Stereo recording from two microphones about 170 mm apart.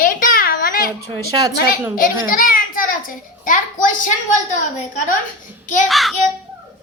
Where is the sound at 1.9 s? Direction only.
55° left (ahead or behind).